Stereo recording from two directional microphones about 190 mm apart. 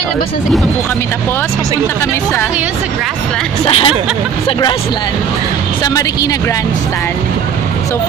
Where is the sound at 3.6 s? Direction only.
30° left (ahead or behind).